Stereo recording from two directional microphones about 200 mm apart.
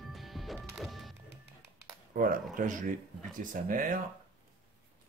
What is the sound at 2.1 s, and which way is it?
Speech, 45° right (ahead or behind).